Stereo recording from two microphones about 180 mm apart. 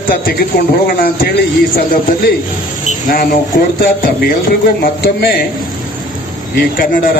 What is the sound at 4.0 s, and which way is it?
Speech, 50° left (ahead or behind).